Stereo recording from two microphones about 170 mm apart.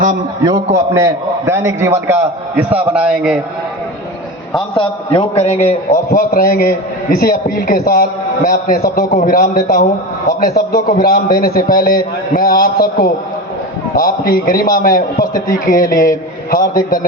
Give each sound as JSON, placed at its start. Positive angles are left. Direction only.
{"t": 0.9, "sound": "a man's voice", "side_deg": -15}
{"t": 4.7, "sound": "a man's voice", "side_deg": 30}
{"t": 6.1, "sound": "a man's voice", "side_deg": 60}